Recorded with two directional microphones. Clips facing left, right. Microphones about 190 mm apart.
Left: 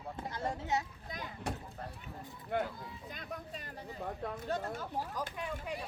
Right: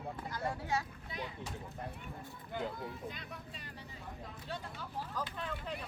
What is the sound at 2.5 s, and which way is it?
Speech, 65° left (ahead or behind).